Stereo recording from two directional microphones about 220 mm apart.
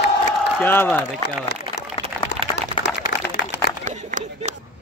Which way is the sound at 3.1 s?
55° left (ahead or behind).